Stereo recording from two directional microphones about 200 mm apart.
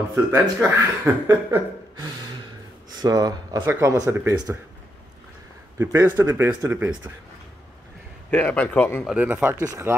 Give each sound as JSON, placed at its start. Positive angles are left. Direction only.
{"t": 0.1, "sound": "speech", "side_deg": -10}
{"t": 5.8, "sound": "speech", "side_deg": -15}
{"t": 8.3, "sound": "a man's voice", "side_deg": 10}
{"t": 9.0, "sound": "speech", "side_deg": -5}